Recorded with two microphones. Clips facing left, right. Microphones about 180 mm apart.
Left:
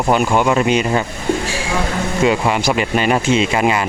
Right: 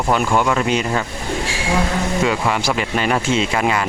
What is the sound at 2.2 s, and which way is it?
Speech, 15° left (ahead or behind).